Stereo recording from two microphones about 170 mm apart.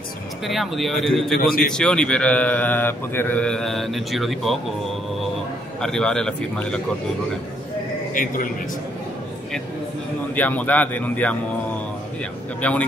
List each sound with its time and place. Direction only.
0.5 s a man's voice: centre (ahead or behind)
5.8 s a man's voice: 5° left (ahead or behind)
8.1 s speech: 50° left (ahead or behind)
10.3 s speech: 10° left (ahead or behind)
12.6 s speech: 10° left (ahead or behind)